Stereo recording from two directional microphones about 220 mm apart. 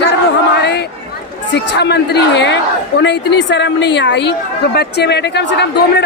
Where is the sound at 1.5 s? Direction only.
50° left (ahead or behind).